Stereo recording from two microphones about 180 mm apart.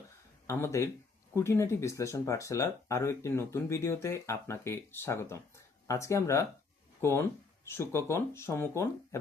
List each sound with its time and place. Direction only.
0.4 s speech: 15° left (ahead or behind)